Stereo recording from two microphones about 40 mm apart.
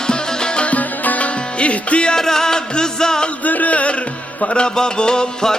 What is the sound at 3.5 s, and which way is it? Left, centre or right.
Music, left.